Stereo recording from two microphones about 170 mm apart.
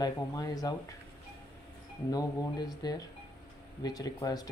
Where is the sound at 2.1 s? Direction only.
20° left (ahead or behind).